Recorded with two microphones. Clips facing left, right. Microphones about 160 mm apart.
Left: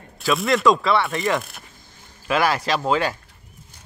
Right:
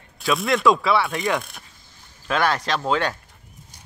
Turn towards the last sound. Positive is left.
turn(degrees=5)  # may be behind; listen again after turning